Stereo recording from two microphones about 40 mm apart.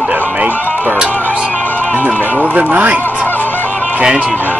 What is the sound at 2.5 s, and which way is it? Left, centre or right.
Speech, right.